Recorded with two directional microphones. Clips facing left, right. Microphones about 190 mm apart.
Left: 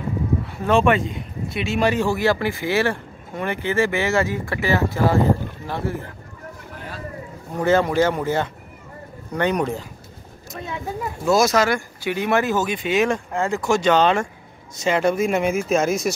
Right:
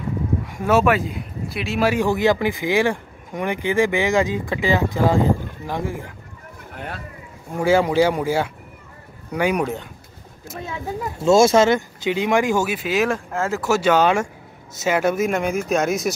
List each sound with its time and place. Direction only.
0.5 s speech: 10° right (ahead or behind)
2.0 s speech: 20° right (ahead or behind)
6.7 s a sound: 60° right (ahead or behind)
7.5 s speech: 10° right (ahead or behind)
11.2 s speech: 25° right (ahead or behind); by 16.1 s centre (ahead or behind)